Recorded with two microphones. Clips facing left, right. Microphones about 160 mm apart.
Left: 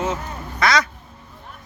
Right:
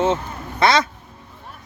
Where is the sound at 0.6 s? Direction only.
25° right (ahead or behind).